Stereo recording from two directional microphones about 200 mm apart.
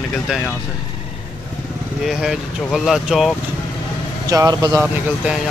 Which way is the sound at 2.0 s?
Centre (ahead or behind).